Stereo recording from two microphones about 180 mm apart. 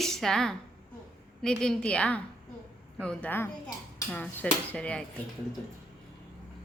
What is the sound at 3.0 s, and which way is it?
Dishes, 5° left (ahead or behind).